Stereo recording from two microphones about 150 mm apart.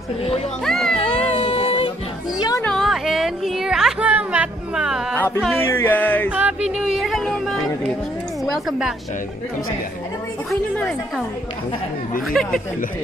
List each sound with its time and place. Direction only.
0.7 s music: 5° left (ahead or behind)
0.9 s a sound: 40° left (ahead or behind)
2.3 s a sound: 30° left (ahead or behind)
2.6 s music: centre (ahead or behind)
5.6 s music: 15° left (ahead or behind)
6.3 s music: 5° right (ahead or behind)
8.6 s speech: 5° right (ahead or behind)
12.3 s speech: 5° left (ahead or behind)